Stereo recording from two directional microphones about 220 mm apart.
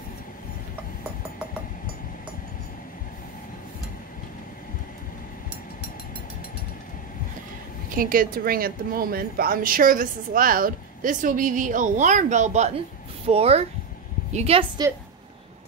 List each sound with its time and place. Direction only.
7.9 s a woman's voice: 40° right (ahead or behind); by 14.9 s 25° right (ahead or behind)